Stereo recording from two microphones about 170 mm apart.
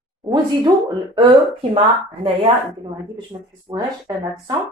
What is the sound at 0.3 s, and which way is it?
Speech, 25° right (ahead or behind).